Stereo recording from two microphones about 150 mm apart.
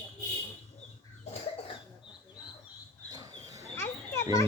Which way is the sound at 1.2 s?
45° left (ahead or behind).